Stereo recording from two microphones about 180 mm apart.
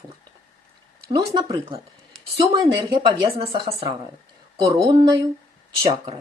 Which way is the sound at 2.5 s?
30° right (ahead or behind).